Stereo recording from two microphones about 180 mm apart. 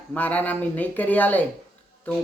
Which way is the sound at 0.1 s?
10° left (ahead or behind).